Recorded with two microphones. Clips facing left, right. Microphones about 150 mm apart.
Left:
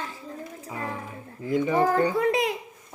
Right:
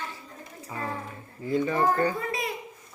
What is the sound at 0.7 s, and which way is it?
Music, 15° left (ahead or behind).